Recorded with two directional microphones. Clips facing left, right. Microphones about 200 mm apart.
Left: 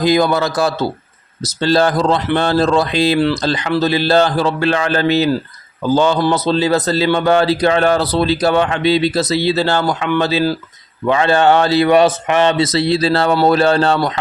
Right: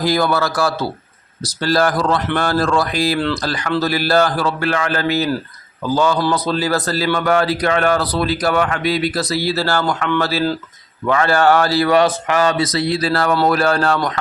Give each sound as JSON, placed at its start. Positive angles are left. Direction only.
{"t": 0.0, "sound": "a man's voice", "side_deg": 20}